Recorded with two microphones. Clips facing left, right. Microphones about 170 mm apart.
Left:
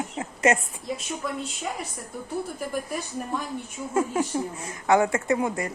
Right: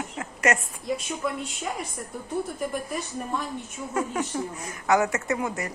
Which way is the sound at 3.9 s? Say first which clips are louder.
Left 3 dB; 30° left (ahead or behind).